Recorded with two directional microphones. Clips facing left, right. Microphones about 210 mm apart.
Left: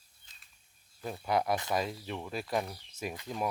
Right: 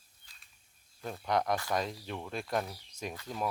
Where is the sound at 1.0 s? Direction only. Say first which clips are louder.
Left 1 dB; 5° left (ahead or behind).